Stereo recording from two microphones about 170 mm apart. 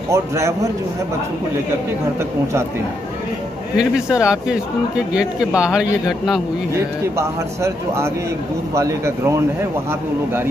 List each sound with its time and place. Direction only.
0.1 s speech: 15° right (ahead or behind)
3.7 s speech: 5° right (ahead or behind)
6.7 s speech: 15° right (ahead or behind)